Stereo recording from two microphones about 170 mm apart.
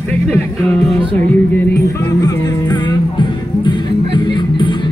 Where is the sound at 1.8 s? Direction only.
20° left (ahead or behind).